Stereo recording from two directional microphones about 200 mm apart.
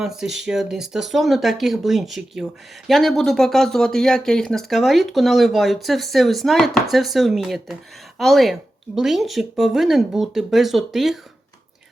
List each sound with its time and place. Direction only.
0.0 s speech: centre (ahead or behind)